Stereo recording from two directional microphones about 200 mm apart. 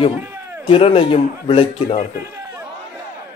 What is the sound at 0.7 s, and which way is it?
A man's voice, 25° left (ahead or behind).